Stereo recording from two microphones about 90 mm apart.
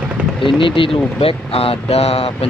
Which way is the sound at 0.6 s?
75° left (ahead or behind).